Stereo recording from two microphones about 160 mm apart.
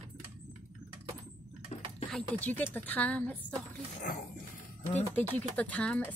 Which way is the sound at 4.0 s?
60° left (ahead or behind).